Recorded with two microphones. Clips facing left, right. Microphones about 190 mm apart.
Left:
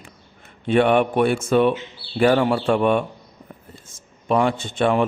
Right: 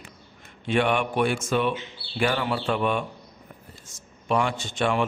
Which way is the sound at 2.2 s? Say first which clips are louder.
Left 8 dB; 40° left (ahead or behind).